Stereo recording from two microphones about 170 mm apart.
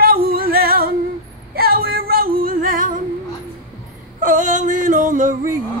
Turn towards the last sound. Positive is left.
turn(degrees=-50)  # may be behind; listen again after turning